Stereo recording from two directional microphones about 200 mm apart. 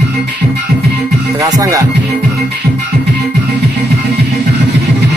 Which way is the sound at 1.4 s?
15° right (ahead or behind).